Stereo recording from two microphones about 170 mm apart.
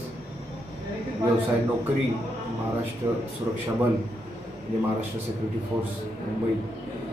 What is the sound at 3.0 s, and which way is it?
Speech, 30° right (ahead or behind).